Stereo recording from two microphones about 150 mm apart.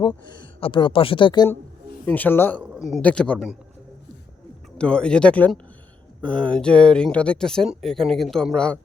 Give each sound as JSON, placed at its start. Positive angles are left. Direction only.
{"t": 0.3, "sound": "speech", "side_deg": 30}
{"t": 2.0, "sound": "speech", "side_deg": 10}
{"t": 2.7, "sound": "speech", "side_deg": 0}
{"t": 4.8, "sound": "speech", "side_deg": 5}